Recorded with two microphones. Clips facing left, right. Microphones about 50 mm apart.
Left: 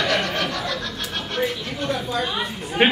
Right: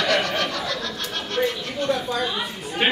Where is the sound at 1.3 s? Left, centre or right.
Centre.